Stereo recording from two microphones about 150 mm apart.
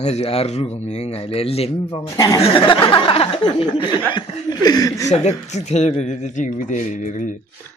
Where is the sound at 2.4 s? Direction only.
35° left (ahead or behind).